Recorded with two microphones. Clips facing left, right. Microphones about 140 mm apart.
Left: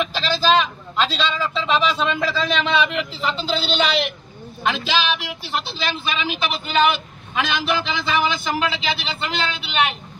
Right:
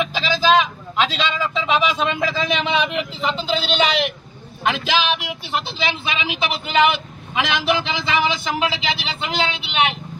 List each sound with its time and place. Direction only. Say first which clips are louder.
0.0 s a man's voice: right 1 dB; 10° right (ahead or behind)
4.7 s speech: right 2 dB; 55° right (ahead or behind)
5.2 s a man's voice: right 1 dB; 15° right (ahead or behind)